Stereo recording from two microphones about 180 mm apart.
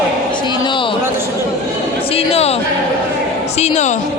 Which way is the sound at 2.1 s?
35° left (ahead or behind).